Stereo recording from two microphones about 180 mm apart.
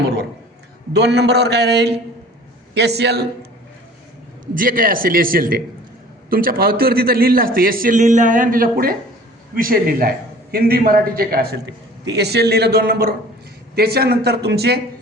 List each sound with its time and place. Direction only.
0.9 s a man's voice: 70° right (ahead or behind)
4.5 s a man's voice: 50° right (ahead or behind)